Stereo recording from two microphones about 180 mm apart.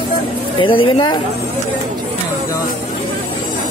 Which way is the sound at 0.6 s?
30° left (ahead or behind).